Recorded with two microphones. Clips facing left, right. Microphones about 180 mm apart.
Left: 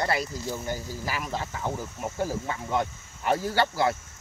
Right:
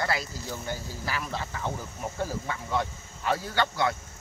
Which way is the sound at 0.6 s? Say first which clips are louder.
Left 2 dB; 15° left (ahead or behind).